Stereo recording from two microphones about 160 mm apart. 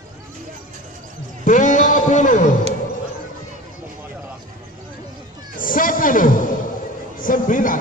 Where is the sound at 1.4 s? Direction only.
50° left (ahead or behind).